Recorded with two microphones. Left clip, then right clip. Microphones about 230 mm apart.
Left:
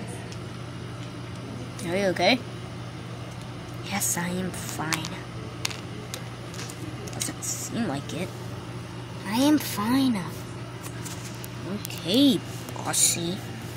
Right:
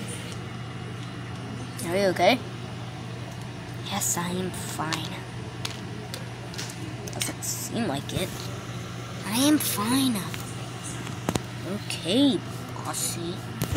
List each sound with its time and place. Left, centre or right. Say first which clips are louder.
1.9 s speech: right 1 dB; centre
3.9 s a woman's voice: even; centre
7.7 s speech: right 3 dB; centre
9.3 s speech: even; centre
11.9 s speech: left 1 dB; centre
13.0 s speech: left 6 dB; left